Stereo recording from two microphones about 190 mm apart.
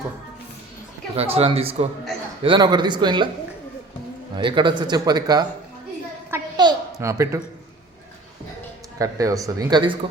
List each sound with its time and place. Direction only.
1.1 s a man's voice: 30° right (ahead or behind)
4.4 s speech: 25° right (ahead or behind)
6.6 s babbling: 20° right (ahead or behind)
9.0 s speech: 15° right (ahead or behind)